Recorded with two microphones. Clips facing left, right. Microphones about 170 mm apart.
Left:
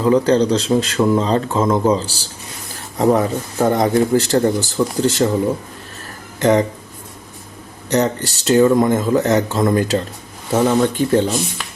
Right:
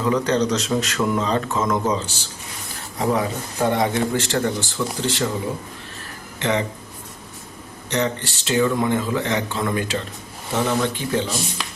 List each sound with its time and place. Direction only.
0.0 s a man's voice: 30° left (ahead or behind)
6.4 s speech: 40° left (ahead or behind)
7.9 s a man's voice: 40° left (ahead or behind)